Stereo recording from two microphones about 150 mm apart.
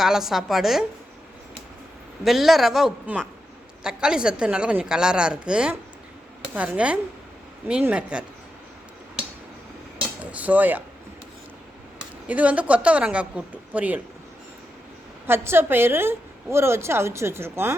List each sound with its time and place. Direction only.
0.0 s a woman's voice: centre (ahead or behind)
2.2 s a woman's voice: centre (ahead or behind)
10.3 s speech: 10° right (ahead or behind)
12.3 s a woman's voice: 10° right (ahead or behind)
15.3 s a woman's voice: 15° right (ahead or behind)